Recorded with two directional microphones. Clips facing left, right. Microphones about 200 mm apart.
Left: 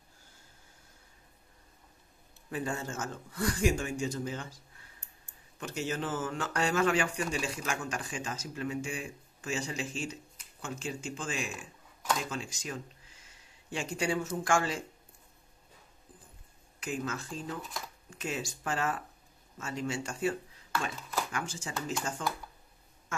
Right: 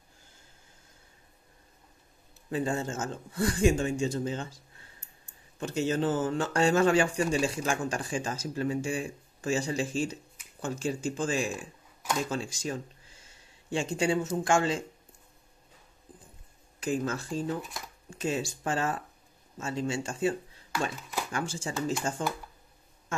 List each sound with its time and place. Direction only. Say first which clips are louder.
2.5 s speech: right 5 dB; 25° right (ahead or behind)
5.6 s speech: right 7 dB; 30° right (ahead or behind)
16.8 s speech: right 6 dB; 35° right (ahead or behind)